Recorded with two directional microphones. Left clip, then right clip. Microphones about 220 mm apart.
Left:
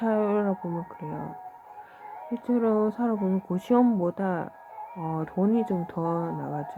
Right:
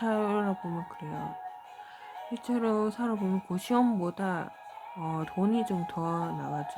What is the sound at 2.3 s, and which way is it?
Speech, 20° right (ahead or behind).